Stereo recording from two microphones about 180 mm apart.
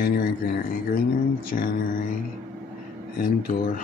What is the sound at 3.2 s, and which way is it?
Speech, 50° left (ahead or behind).